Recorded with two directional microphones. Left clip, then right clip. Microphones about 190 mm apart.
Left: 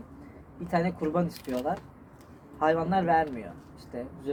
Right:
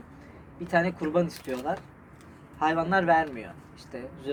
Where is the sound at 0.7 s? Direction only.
20° right (ahead or behind).